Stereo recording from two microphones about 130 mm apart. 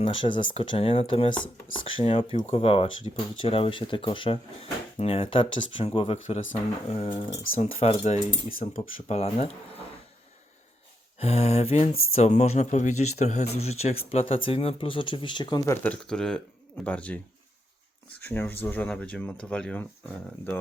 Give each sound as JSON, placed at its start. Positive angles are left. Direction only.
{"t": 0.0, "sound": "speech", "side_deg": 40}
{"t": 8.0, "sound": "speech", "side_deg": 75}
{"t": 8.7, "sound": "speech", "side_deg": 50}
{"t": 11.2, "sound": "speech", "side_deg": 55}
{"t": 15.6, "sound": "speech", "side_deg": 15}
{"t": 18.2, "sound": "speech", "side_deg": 15}